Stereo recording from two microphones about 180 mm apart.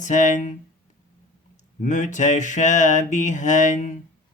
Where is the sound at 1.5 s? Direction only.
45° left (ahead or behind).